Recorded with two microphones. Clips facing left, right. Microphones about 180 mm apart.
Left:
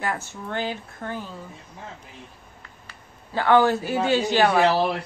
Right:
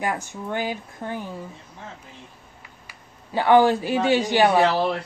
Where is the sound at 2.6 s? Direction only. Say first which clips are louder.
Even; 15° right (ahead or behind).